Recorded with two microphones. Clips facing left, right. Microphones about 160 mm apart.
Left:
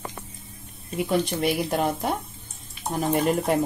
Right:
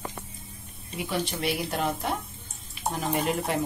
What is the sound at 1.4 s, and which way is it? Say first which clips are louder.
Speech: left 5 dB; 50° left (ahead or behind).